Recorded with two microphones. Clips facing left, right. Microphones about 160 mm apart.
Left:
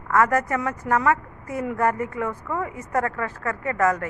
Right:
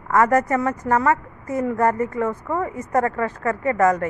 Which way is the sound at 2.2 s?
20° right (ahead or behind).